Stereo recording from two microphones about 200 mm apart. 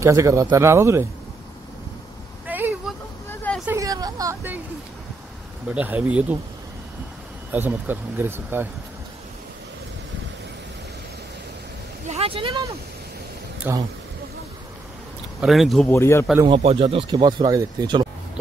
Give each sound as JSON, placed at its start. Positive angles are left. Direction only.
{"t": 0.0, "sound": "speech", "side_deg": -15}
{"t": 2.4, "sound": "vehicle", "side_deg": -10}
{"t": 3.3, "sound": "vehicle", "side_deg": 5}
{"t": 3.6, "sound": "a sound", "side_deg": -15}
{"t": 5.8, "sound": "speech", "side_deg": -5}
{"t": 7.5, "sound": "speech", "side_deg": -10}
{"t": 12.1, "sound": "speech", "side_deg": -30}
{"t": 13.7, "sound": "speech", "side_deg": -10}
{"t": 15.4, "sound": "speech", "side_deg": 0}
{"t": 15.9, "sound": "a man's voice", "side_deg": 15}
{"t": 16.4, "sound": "speech", "side_deg": -25}